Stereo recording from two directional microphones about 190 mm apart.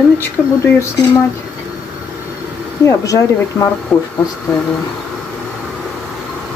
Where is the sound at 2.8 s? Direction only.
15° left (ahead or behind).